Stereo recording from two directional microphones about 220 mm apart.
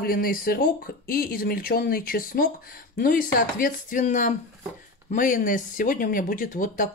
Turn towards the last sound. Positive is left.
turn(degrees=35)  # may be behind; listen again after turning